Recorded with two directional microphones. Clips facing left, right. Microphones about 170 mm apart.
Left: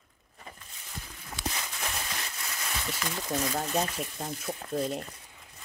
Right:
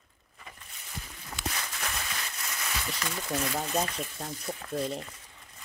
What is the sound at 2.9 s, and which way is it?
Speech, 5° left (ahead or behind).